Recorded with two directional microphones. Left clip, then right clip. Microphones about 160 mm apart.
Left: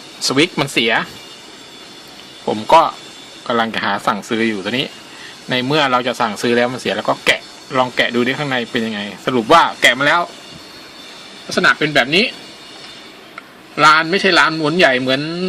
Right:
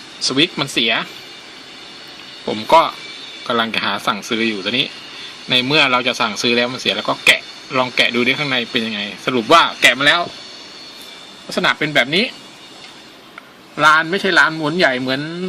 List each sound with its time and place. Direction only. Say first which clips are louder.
0.2 s speech: left 1 dB; 20° left (ahead or behind)
2.5 s speech: left 1 dB; 5° left (ahead or behind)
11.5 s speech: left 2 dB; 10° right (ahead or behind)
13.7 s speech: left 2 dB; centre (ahead or behind)